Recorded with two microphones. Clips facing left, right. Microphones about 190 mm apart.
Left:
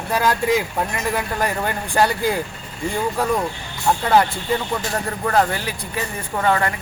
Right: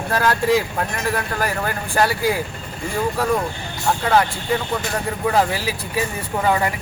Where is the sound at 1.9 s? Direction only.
5° right (ahead or behind).